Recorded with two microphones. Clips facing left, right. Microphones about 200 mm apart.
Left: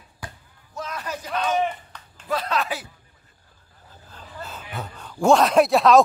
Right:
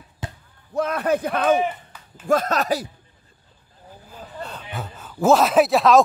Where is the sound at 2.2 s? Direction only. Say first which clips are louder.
Right 5 dB; 45° right (ahead or behind).